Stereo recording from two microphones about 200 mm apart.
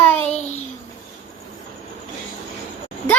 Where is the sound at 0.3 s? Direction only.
35° left (ahead or behind).